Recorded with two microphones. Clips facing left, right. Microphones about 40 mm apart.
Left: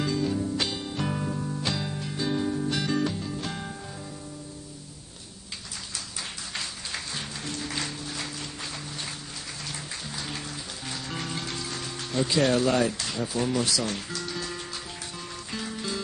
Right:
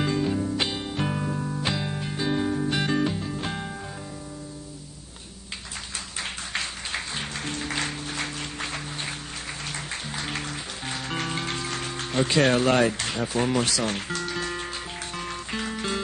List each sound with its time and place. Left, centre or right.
0.0 s music: right
5.9 s music: right